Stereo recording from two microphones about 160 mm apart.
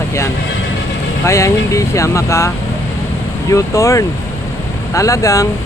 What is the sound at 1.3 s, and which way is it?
Speech, 20° left (ahead or behind).